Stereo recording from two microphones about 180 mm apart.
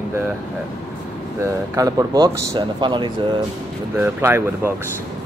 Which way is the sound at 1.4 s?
20° right (ahead or behind).